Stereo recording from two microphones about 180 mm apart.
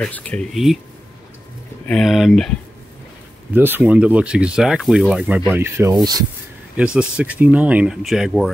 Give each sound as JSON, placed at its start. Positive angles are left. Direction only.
{"t": 0.0, "sound": "speech", "side_deg": 10}
{"t": 1.9, "sound": "speech", "side_deg": 0}
{"t": 3.5, "sound": "speech", "side_deg": -10}
{"t": 5.5, "sound": "rub", "side_deg": -15}
{"t": 6.8, "sound": "speech", "side_deg": -5}